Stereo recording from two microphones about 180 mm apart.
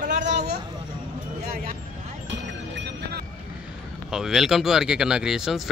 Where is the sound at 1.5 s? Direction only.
55° right (ahead or behind).